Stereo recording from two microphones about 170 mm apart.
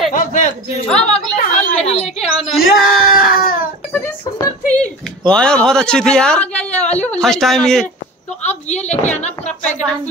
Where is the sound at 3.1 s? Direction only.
60° left (ahead or behind).